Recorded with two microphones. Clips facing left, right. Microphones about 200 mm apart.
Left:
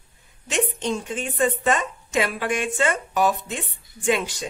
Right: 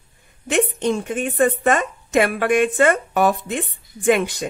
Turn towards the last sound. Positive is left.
turn(degrees=-60)  # may be behind; listen again after turning